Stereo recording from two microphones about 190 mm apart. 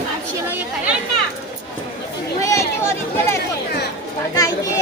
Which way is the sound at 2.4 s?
15° left (ahead or behind).